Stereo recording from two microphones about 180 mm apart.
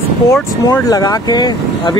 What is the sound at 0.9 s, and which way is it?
Speech, 20° left (ahead or behind).